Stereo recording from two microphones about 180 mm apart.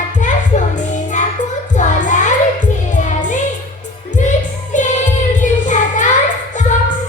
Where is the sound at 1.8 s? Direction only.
40° left (ahead or behind).